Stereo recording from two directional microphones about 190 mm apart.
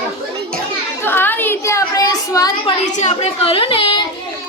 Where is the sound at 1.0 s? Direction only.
10° left (ahead or behind).